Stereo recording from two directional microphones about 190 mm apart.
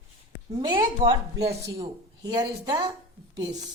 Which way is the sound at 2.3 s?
20° right (ahead or behind).